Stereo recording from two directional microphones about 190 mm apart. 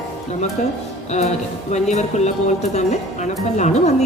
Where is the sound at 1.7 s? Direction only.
35° left (ahead or behind).